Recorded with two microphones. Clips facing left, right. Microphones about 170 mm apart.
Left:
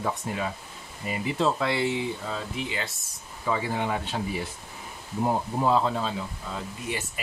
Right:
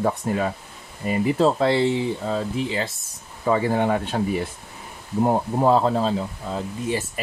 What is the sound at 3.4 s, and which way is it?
Speech, 50° right (ahead or behind).